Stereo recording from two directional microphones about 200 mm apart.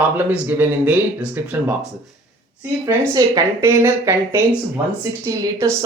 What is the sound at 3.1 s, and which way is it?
Speech, 15° right (ahead or behind).